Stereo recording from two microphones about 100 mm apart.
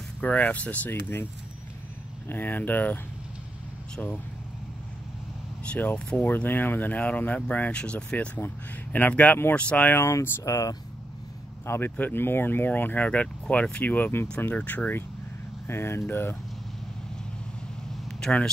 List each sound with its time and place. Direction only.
0.2 s speech: 15° left (ahead or behind)
2.2 s speech: 20° left (ahead or behind)
5.7 s speech: 15° left (ahead or behind)
9.9 s speech: 30° left (ahead or behind)
11.6 s speech: 25° left (ahead or behind)
18.0 s vehicle: 5° left (ahead or behind)